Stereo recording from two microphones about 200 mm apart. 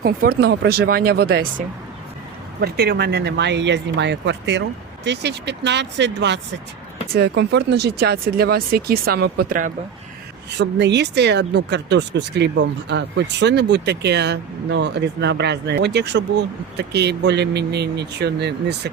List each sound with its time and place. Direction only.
0.0 s speech: 50° right (ahead or behind)
10.6 s speech: 60° right (ahead or behind)